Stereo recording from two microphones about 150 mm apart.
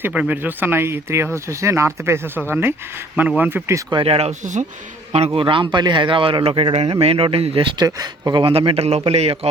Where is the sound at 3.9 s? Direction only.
40° right (ahead or behind).